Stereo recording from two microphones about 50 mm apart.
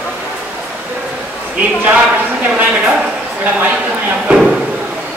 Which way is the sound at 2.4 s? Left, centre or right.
Right.